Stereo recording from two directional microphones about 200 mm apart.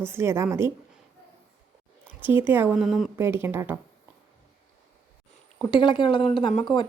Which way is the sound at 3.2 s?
10° right (ahead or behind).